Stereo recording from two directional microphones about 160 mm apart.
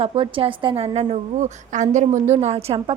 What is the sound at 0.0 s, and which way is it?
A woman's voice, 35° right (ahead or behind).